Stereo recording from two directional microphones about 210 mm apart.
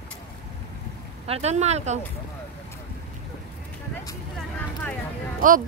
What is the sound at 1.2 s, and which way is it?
Speech, 30° right (ahead or behind).